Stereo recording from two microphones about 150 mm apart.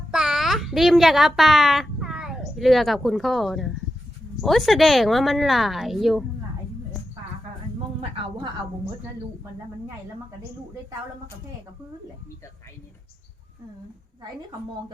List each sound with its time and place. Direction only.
0.1 s a child's voice: 5° right (ahead or behind)
8.1 s speech: 40° right (ahead or behind)